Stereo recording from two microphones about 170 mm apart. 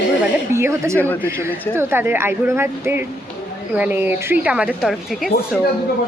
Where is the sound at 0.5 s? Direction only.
15° right (ahead or behind).